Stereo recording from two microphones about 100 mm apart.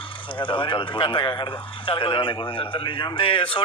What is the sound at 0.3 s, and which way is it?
A man's voice, 55° left (ahead or behind).